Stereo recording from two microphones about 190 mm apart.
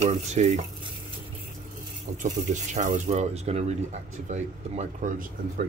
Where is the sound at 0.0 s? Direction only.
40° right (ahead or behind).